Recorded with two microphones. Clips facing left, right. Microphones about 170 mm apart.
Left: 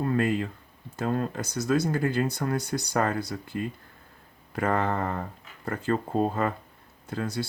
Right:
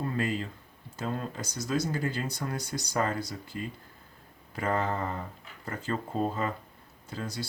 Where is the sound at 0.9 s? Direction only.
55° left (ahead or behind).